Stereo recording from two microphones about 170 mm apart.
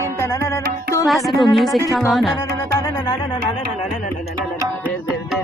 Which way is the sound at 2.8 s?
20° left (ahead or behind).